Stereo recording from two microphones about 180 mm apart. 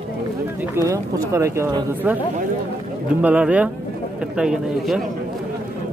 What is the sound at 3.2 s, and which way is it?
A man's voice, 10° right (ahead or behind).